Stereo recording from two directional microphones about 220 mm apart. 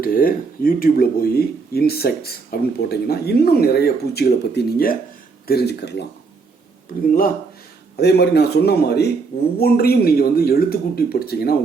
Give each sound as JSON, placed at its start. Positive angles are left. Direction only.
{"t": 0.0, "sound": "speech", "side_deg": 40}
{"t": 7.1, "sound": "speech", "side_deg": 40}